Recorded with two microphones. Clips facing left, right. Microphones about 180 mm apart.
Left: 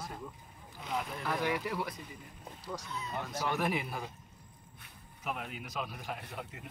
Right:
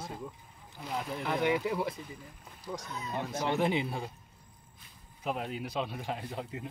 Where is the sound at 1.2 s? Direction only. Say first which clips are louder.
Right 6 dB; 20° right (ahead or behind).